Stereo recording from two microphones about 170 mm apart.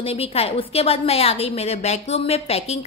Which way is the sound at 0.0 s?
35° left (ahead or behind).